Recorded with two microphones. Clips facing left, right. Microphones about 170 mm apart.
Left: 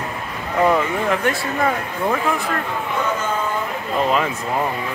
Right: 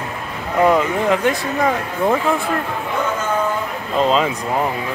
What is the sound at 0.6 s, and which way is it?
Speech, 15° right (ahead or behind).